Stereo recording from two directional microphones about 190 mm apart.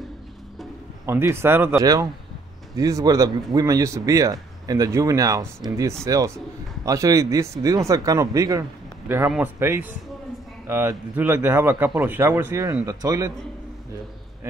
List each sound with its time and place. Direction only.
1.0 s speech: 15° right (ahead or behind)